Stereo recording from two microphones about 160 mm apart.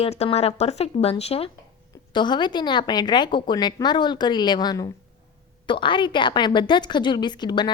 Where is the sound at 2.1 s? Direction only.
30° left (ahead or behind).